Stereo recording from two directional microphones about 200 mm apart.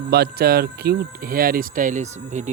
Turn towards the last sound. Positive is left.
turn(degrees=-45)  # may be behind; listen again after turning